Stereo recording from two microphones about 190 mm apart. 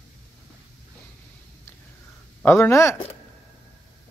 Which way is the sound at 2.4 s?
15° left (ahead or behind).